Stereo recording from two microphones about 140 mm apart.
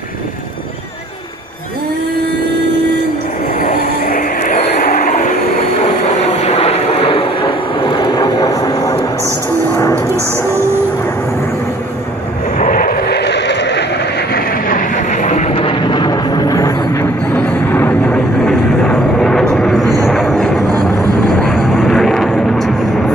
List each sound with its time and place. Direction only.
3.5 s vehicle: 80° left; by 9.0 s 25° left (ahead or behind)
12.5 s vehicle: 70° left (ahead or behind)
14.5 s vehicle: 70° left (ahead or behind); by 17.0 s 25° left (ahead or behind)
17.4 s music: 15° left (ahead or behind)
20.1 s vehicle: centre (ahead or behind)